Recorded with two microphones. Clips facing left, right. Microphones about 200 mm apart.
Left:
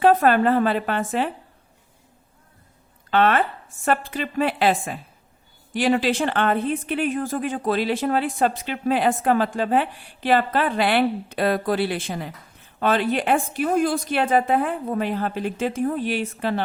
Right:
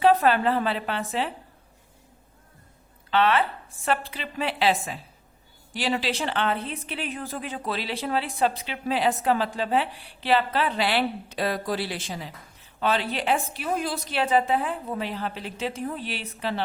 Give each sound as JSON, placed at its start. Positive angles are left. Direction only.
{"t": 0.0, "sound": "speech", "side_deg": 50}
{"t": 3.1, "sound": "speech", "side_deg": 50}